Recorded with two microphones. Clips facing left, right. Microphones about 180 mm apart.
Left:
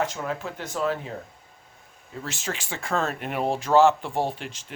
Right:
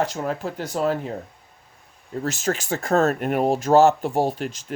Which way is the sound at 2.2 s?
40° right (ahead or behind).